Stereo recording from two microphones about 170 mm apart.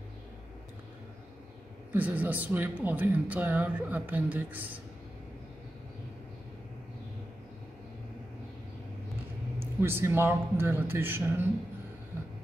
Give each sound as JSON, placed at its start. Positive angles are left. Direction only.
{"t": 1.9, "sound": "speech", "side_deg": -10}
{"t": 9.6, "sound": "speech", "side_deg": -15}